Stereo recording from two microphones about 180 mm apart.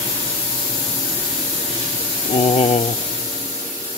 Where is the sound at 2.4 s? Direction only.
30° left (ahead or behind).